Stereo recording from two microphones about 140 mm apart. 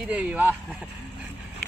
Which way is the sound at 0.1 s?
10° right (ahead or behind).